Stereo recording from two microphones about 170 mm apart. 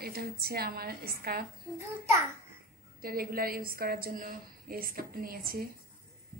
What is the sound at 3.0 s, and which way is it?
A woman's voice, 60° right (ahead or behind).